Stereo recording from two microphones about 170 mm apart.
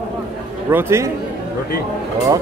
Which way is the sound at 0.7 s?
15° right (ahead or behind).